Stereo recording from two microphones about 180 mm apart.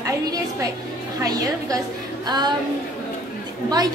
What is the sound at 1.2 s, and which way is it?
A woman's voice, 20° right (ahead or behind).